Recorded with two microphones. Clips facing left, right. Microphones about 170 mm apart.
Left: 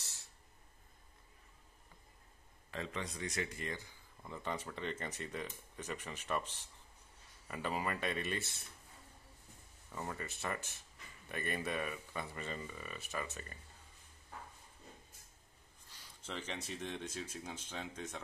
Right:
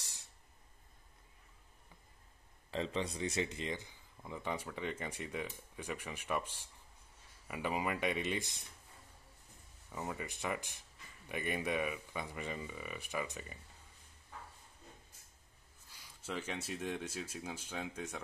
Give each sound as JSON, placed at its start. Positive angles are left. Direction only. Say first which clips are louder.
{"t": 0.0, "sound": "a sound", "louder": "even", "side_deg": -15}
{"t": 2.7, "sound": "speech", "louder": "right 5 dB", "side_deg": -30}
{"t": 9.9, "sound": "speech", "louder": "right 2 dB", "side_deg": -10}
{"t": 15.9, "sound": "speech", "louder": "right 4 dB", "side_deg": -10}